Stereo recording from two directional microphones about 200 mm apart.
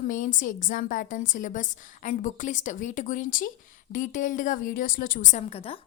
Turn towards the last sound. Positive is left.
turn(degrees=30)  # may be behind; listen again after turning